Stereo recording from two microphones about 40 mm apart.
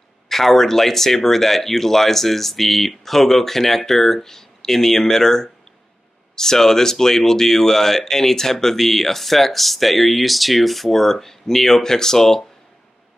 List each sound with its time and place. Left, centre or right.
0.3 s speech: centre